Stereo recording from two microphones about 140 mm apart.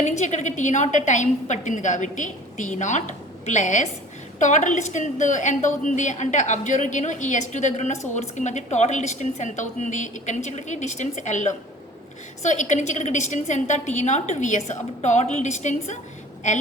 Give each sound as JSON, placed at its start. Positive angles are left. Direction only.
{"t": 0.0, "sound": "a woman's voice", "side_deg": 55}